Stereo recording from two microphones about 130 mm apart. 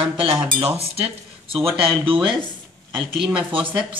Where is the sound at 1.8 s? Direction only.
40° right (ahead or behind).